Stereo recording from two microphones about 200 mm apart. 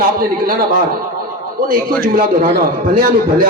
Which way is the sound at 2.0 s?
45° right (ahead or behind).